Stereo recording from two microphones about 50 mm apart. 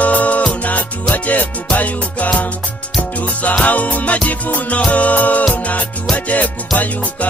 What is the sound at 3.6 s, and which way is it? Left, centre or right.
Music, left.